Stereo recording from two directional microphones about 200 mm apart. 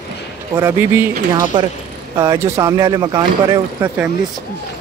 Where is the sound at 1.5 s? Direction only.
25° right (ahead or behind).